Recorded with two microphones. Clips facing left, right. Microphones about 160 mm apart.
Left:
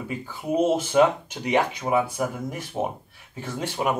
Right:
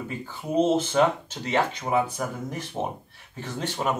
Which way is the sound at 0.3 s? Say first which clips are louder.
Even; 10° left (ahead or behind).